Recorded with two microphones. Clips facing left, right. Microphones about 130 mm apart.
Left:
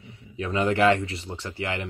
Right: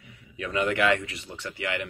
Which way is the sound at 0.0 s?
30° left (ahead or behind).